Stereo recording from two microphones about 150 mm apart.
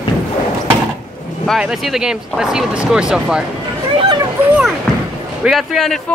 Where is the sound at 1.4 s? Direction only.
Centre (ahead or behind).